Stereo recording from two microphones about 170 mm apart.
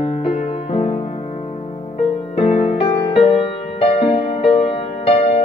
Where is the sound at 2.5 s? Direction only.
35° left (ahead or behind).